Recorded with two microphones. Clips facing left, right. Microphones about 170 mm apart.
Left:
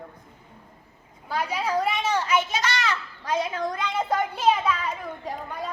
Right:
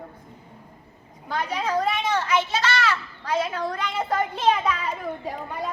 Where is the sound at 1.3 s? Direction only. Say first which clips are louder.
Even; 10° left (ahead or behind).